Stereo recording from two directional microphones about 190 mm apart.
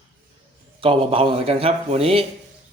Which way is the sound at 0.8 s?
25° right (ahead or behind).